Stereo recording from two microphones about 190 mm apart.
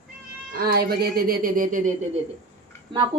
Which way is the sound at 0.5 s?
55° right (ahead or behind).